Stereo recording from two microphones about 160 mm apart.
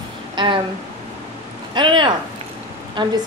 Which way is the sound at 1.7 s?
30° right (ahead or behind).